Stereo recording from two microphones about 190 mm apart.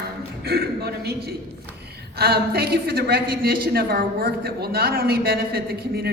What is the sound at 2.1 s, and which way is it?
A woman's voice, 55° right (ahead or behind).